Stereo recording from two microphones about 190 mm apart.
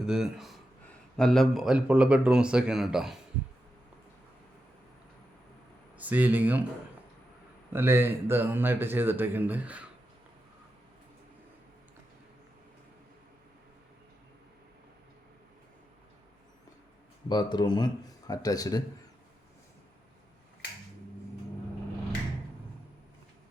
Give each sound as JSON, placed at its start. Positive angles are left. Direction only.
{"t": 0.0, "sound": "speech", "side_deg": -5}
{"t": 6.0, "sound": "speech", "side_deg": -10}
{"t": 7.7, "sound": "speech", "side_deg": -10}
{"t": 17.2, "sound": "speech", "side_deg": 25}